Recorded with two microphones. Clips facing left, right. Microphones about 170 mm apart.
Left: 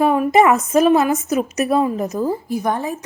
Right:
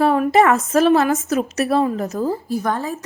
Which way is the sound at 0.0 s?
5° left (ahead or behind).